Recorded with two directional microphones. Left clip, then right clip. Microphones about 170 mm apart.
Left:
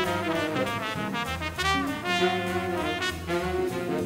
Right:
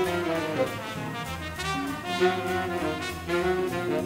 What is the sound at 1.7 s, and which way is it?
Music, 40° left (ahead or behind).